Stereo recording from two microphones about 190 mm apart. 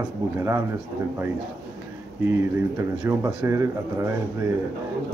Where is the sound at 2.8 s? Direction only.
15° right (ahead or behind).